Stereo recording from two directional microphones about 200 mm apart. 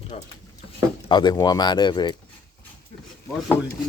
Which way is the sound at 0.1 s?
30° left (ahead or behind).